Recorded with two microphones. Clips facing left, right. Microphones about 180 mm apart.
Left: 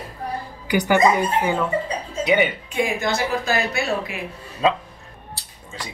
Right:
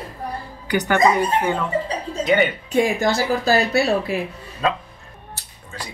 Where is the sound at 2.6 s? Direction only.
35° right (ahead or behind).